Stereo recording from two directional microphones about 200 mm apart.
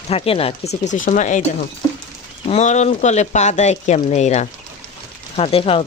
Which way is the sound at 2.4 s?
35° left (ahead or behind).